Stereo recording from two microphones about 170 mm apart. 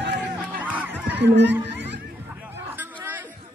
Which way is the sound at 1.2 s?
90° right.